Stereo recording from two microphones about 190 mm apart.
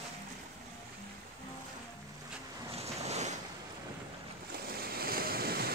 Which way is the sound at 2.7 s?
35° right (ahead or behind).